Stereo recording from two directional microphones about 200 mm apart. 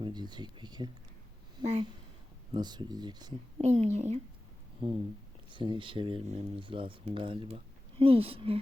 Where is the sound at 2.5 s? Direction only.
20° right (ahead or behind).